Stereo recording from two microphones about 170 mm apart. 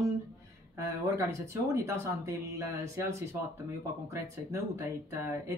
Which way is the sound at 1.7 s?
20° right (ahead or behind).